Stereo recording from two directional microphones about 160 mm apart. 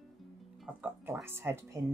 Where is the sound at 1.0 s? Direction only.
15° right (ahead or behind).